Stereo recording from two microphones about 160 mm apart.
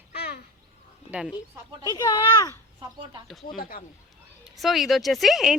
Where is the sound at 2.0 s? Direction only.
20° left (ahead or behind).